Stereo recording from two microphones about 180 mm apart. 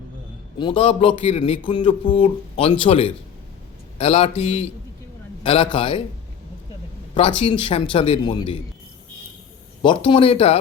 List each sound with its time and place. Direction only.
0.6 s a man's voice: 30° left (ahead or behind)
7.1 s a man's voice: 30° left (ahead or behind)
9.8 s a man's voice: 25° left (ahead or behind)